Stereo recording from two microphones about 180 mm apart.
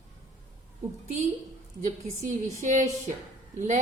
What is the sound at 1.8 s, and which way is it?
A woman's voice, 45° right (ahead or behind).